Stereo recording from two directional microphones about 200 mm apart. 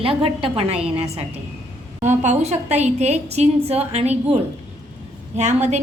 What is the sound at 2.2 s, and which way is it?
A woman's voice, 35° right (ahead or behind).